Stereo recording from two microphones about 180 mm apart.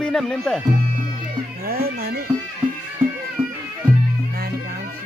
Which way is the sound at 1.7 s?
55° right (ahead or behind).